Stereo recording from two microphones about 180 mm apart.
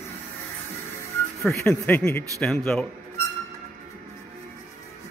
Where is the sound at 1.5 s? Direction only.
10° left (ahead or behind).